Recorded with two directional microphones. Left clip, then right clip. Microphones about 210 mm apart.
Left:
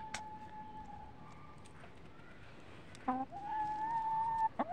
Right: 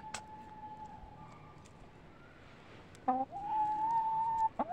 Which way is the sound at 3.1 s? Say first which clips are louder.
Right 5 dB; 10° right (ahead or behind).